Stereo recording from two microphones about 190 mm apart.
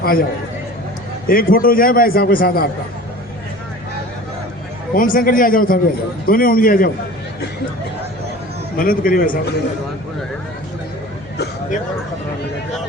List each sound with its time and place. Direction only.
0.0 s a man's voice: 50° left (ahead or behind)
1.3 s a man's voice: 50° left (ahead or behind)
4.9 s a man's voice: 45° left (ahead or behind)
8.8 s a man's voice: 50° left (ahead or behind)